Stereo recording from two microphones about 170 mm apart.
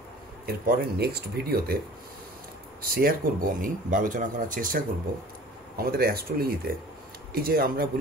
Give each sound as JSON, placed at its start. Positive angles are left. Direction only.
{"t": 0.7, "sound": "speech", "side_deg": -70}
{"t": 2.8, "sound": "speech", "side_deg": -60}
{"t": 5.8, "sound": "speech", "side_deg": -65}